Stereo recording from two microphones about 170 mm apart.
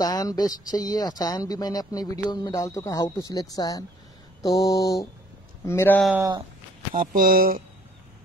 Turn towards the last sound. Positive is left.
turn(degrees=-60)  # may be behind; listen again after turning